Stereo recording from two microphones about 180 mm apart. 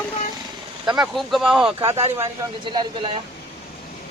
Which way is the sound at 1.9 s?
35° right (ahead or behind).